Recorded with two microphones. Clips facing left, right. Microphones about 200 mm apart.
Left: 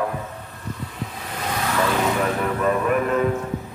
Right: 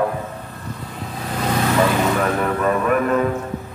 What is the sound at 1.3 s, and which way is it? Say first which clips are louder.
Vehicle: right 7 dB; 35° right (ahead or behind).